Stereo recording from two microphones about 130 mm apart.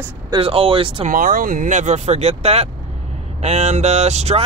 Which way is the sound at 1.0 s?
90° right.